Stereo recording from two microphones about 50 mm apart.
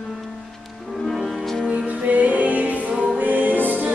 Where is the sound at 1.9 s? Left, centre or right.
Right.